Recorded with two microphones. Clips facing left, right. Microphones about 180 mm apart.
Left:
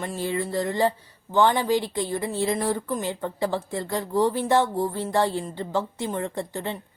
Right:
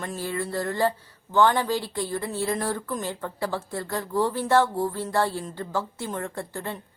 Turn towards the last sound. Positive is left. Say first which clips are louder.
# left 3 dB
turn(degrees=20)  # may be behind; listen again after turning